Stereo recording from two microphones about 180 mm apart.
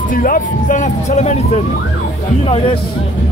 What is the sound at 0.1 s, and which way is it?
Speech, 50° left (ahead or behind).